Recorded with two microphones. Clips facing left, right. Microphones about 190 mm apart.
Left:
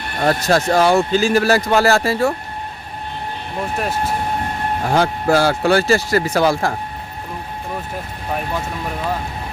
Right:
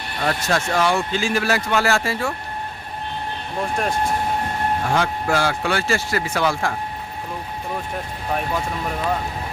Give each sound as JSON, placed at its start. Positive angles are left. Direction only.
{"t": 0.2, "sound": "speech", "side_deg": 40}
{"t": 3.8, "sound": "speech", "side_deg": 5}
{"t": 4.9, "sound": "speech", "side_deg": 35}